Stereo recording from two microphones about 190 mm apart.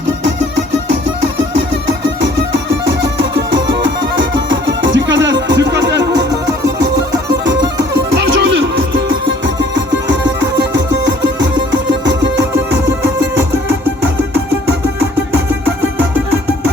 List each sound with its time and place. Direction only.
0.3 s music: 65° right (ahead or behind)
15.8 s music: 10° right (ahead or behind)